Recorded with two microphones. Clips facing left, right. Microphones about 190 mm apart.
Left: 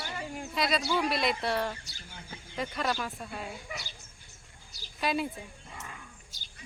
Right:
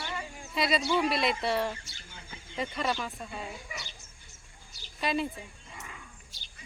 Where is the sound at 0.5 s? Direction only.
Centre (ahead or behind).